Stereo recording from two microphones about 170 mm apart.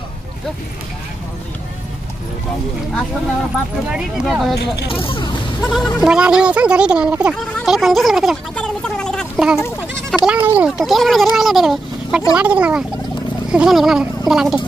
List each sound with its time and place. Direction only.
3.9 s speech: 5° right (ahead or behind)
4.8 s speech: 30° left (ahead or behind)
5.6 s speech: centre (ahead or behind)
7.5 s a sound: centre (ahead or behind)
10.1 s speech: 5° right (ahead or behind)
11.3 s a sound: centre (ahead or behind)
12.3 s speech: 5° right (ahead or behind)